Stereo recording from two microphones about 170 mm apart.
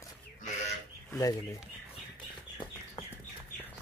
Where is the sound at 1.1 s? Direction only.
20° left (ahead or behind).